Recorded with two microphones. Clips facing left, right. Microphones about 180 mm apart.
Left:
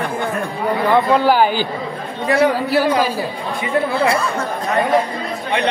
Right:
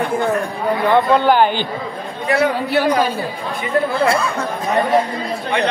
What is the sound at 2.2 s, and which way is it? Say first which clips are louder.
Speech: left 2 dB; 35° left (ahead or behind).